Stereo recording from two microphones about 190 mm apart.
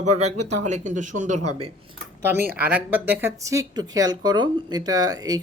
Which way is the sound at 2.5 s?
10° right (ahead or behind).